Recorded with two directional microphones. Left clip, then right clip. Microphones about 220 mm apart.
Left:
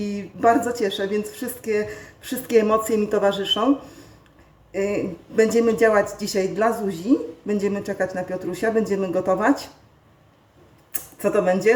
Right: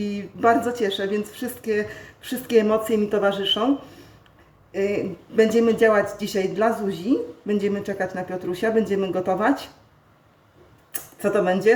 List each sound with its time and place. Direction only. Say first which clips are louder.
0.0 s speech: left 1 dB; centre (ahead or behind)
4.7 s speech: even; centre (ahead or behind)
10.9 s speech: left 1 dB; centre (ahead or behind)